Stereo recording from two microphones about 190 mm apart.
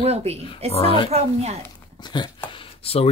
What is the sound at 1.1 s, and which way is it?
Speech, 35° right (ahead or behind).